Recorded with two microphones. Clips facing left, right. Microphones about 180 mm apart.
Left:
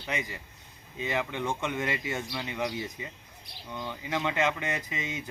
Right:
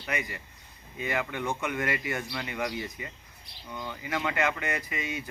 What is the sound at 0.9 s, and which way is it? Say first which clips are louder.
Speech: even; 20° left (ahead or behind).